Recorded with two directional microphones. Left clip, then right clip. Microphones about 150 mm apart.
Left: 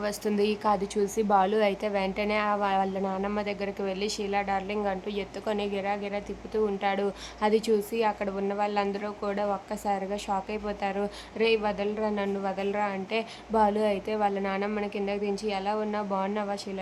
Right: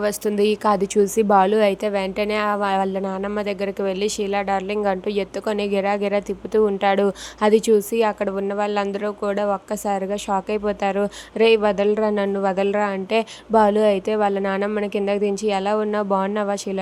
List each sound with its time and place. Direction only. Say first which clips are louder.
0.0 s a woman's voice: right 8 dB; 30° right (ahead or behind)